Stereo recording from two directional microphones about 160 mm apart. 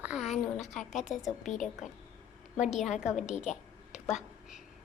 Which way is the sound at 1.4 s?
50° left (ahead or behind).